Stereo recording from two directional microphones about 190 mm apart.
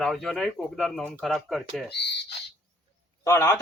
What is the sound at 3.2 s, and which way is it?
Speech, 15° left (ahead or behind).